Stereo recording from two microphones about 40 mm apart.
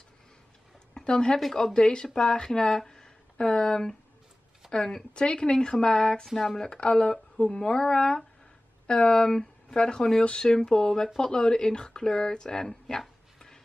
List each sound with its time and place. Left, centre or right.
0.9 s speech: left
2.9 s a sound: left
4.7 s speech: centre
6.2 s speech: centre
6.7 s speech: left
7.3 s speech: centre